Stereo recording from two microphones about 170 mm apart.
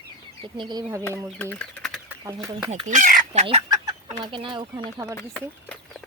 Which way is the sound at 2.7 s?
40° right (ahead or behind).